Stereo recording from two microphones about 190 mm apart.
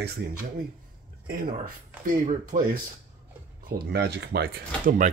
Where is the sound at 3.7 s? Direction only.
60° right (ahead or behind).